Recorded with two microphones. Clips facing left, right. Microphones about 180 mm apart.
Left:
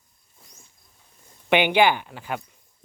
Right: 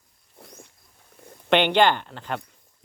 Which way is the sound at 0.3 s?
65° right (ahead or behind).